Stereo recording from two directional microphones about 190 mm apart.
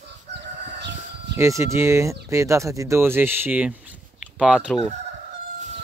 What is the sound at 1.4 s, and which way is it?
Speech, 15° right (ahead or behind).